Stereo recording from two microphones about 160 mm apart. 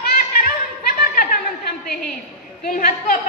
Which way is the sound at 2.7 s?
60° left (ahead or behind).